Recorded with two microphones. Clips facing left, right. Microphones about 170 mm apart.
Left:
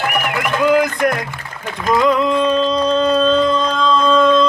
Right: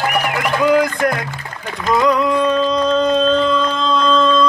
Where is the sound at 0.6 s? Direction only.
20° left (ahead or behind).